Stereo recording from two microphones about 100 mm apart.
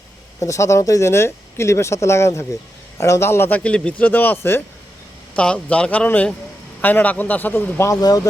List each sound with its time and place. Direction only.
0.3 s speech: 30° left (ahead or behind)
3.6 s speech: 10° left (ahead or behind)
5.4 s speech: 10° left (ahead or behind)
7.9 s speech: 35° left (ahead or behind)